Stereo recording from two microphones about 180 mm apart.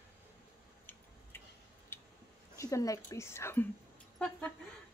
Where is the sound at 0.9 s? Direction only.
10° left (ahead or behind).